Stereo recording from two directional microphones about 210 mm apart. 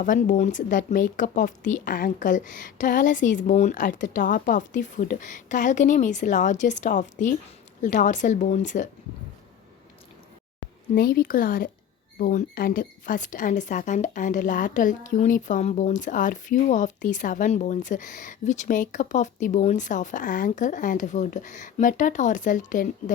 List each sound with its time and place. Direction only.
0.0 s speech: 40° left (ahead or behind)
10.9 s speech: 45° left (ahead or behind)